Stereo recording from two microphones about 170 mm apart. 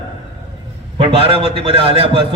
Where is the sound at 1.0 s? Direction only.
35° right (ahead or behind).